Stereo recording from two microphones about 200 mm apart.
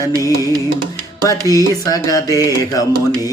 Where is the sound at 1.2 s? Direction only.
15° left (ahead or behind).